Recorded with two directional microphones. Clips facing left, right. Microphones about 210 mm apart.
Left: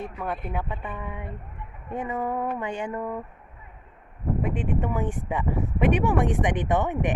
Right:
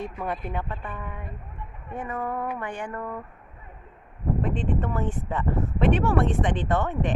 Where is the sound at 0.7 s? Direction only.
15° left (ahead or behind).